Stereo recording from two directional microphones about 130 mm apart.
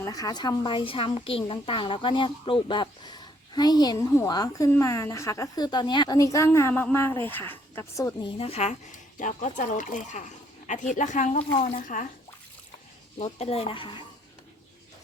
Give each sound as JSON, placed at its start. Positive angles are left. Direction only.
{"t": 0.0, "sound": "a woman's voice", "side_deg": 30}
{"t": 8.2, "sound": "speech", "side_deg": 50}
{"t": 11.6, "sound": "speech", "side_deg": 90}
{"t": 13.1, "sound": "speech", "side_deg": 50}